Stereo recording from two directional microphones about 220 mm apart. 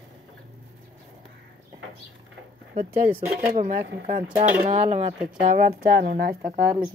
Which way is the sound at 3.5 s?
30° right (ahead or behind).